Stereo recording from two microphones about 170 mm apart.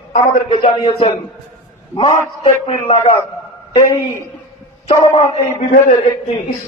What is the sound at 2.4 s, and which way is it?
Speech, 35° left (ahead or behind).